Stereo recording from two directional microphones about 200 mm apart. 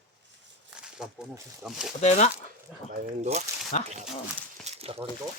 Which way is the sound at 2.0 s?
35° left (ahead or behind).